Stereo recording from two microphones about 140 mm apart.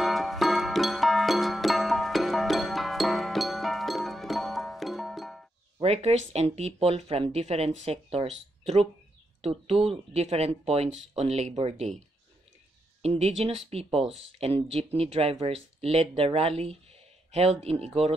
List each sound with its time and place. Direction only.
0.0 s music: centre (ahead or behind)
5.8 s speech: 50° right (ahead or behind)
13.0 s speech: 45° right (ahead or behind)